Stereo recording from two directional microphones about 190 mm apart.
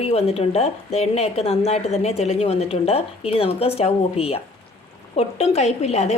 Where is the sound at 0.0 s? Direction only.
30° left (ahead or behind).